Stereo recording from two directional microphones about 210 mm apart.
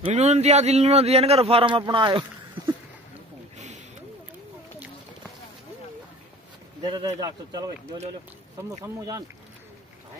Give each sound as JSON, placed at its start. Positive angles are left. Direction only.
{"t": 0.0, "sound": "a man's voice", "side_deg": -30}
{"t": 3.5, "sound": "a sound", "side_deg": -35}
{"t": 6.8, "sound": "a man's voice", "side_deg": -20}